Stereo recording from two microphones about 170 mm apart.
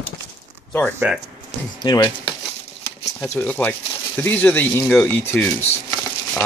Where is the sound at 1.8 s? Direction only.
25° left (ahead or behind).